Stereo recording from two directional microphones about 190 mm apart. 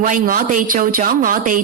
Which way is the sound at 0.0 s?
45° right (ahead or behind).